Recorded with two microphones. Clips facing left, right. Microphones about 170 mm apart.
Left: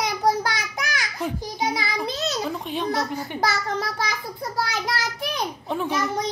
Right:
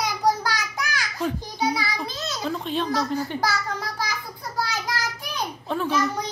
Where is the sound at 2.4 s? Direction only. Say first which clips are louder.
Right 1 dB; 15° left (ahead or behind).